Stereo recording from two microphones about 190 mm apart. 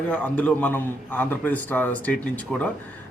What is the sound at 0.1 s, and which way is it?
Speech, 10° left (ahead or behind).